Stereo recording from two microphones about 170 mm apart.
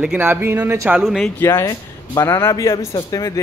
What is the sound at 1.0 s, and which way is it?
Speech, centre (ahead or behind).